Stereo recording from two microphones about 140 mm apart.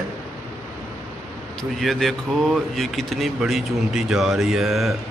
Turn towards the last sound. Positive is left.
turn(degrees=0)  # may be behind; listen again after turning